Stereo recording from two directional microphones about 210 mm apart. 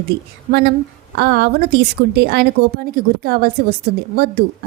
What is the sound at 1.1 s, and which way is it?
Speech, 50° right (ahead or behind).